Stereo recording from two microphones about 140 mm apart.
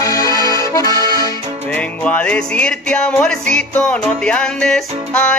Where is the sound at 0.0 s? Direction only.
25° left (ahead or behind).